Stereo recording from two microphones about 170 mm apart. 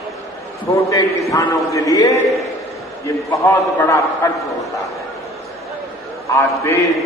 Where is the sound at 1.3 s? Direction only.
20° left (ahead or behind).